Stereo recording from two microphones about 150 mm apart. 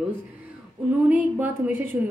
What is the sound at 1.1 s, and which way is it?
Speech, 10° right (ahead or behind).